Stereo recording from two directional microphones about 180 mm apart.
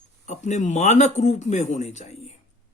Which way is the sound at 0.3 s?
40° left (ahead or behind).